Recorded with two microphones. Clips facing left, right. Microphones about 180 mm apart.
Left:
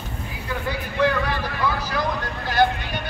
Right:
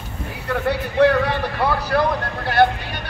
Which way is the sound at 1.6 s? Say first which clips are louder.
Right 7 dB; 65° right (ahead or behind).